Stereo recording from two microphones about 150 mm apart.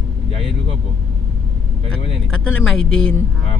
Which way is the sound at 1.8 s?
5° left (ahead or behind).